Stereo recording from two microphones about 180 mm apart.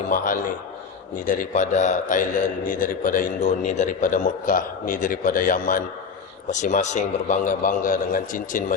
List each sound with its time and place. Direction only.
0.1 s a man's voice: 45° left (ahead or behind)